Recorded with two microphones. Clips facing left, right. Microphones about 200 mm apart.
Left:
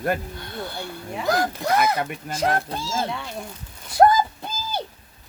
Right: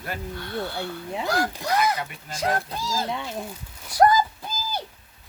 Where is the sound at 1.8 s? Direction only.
55° left (ahead or behind).